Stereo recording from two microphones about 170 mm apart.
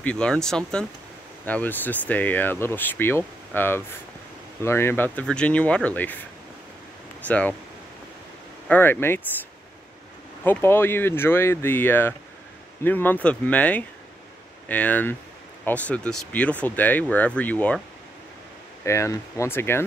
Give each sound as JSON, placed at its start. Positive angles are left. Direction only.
{"t": 0.0, "sound": "speech", "side_deg": 5}
{"t": 7.2, "sound": "speech", "side_deg": 10}
{"t": 8.6, "sound": "speech", "side_deg": 10}
{"t": 10.4, "sound": "speech", "side_deg": 15}
{"t": 18.9, "sound": "speech", "side_deg": 15}